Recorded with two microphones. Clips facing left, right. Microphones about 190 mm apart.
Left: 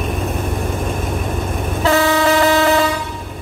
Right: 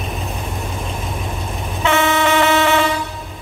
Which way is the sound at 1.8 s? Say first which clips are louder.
Left 2 dB; 35° left (ahead or behind).